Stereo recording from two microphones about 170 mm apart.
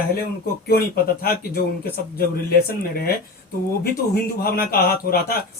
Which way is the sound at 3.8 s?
60° left (ahead or behind).